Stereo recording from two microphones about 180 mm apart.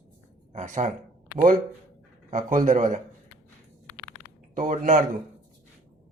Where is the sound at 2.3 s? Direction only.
45° right (ahead or behind).